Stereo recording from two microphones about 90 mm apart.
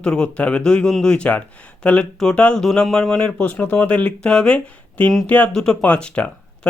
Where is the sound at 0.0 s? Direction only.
10° left (ahead or behind).